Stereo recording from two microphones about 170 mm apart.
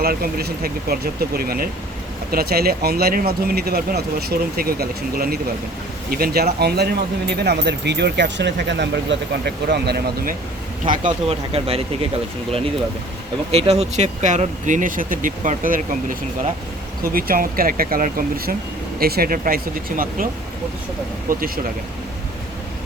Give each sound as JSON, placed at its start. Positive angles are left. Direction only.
{"t": 0.0, "sound": "speech", "side_deg": -60}
{"t": 10.8, "sound": "speech", "side_deg": -50}
{"t": 11.3, "sound": "speech", "side_deg": -35}
{"t": 13.5, "sound": "speech", "side_deg": -35}
{"t": 21.2, "sound": "speech", "side_deg": -60}